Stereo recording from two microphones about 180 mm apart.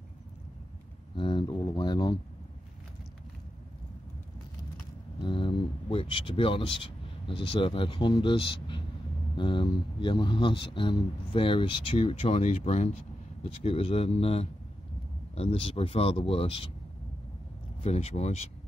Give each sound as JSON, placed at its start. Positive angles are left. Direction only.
{"t": 1.1, "sound": "speech", "side_deg": 25}
{"t": 5.2, "sound": "speech", "side_deg": 25}
{"t": 17.8, "sound": "speech", "side_deg": 35}